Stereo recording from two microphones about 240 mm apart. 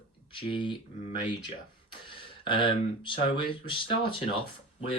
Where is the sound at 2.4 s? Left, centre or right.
Left.